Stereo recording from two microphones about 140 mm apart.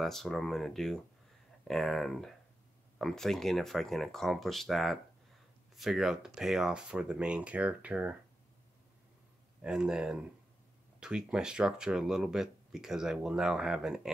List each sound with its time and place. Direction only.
0.0 s speech: centre (ahead or behind)
9.6 s speech: 5° right (ahead or behind)